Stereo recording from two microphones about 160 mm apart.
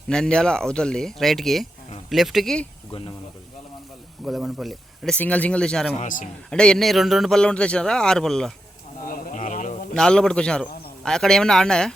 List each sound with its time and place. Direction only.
0.1 s a man's voice: 5° left (ahead or behind)
2.9 s speech: 35° left (ahead or behind)
4.3 s a man's voice: 5° right (ahead or behind)
6.0 s a man's voice: 55° left (ahead or behind)
6.5 s a man's voice: 5° left (ahead or behind)
9.0 s a sound: 60° left (ahead or behind)
9.9 s a man's voice: 5° left (ahead or behind)